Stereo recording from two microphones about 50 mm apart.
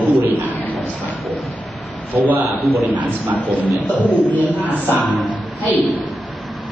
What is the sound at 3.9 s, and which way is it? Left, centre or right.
Speech, left.